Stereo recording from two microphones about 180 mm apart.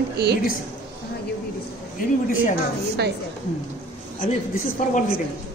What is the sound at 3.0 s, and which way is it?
Speech, 70° right (ahead or behind).